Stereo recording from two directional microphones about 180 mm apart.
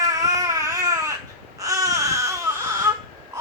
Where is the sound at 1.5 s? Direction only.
20° right (ahead or behind).